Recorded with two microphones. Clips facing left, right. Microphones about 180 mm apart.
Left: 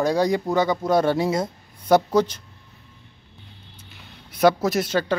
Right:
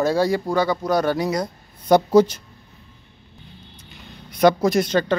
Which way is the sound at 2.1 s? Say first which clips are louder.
Right 5 dB; 10° right (ahead or behind).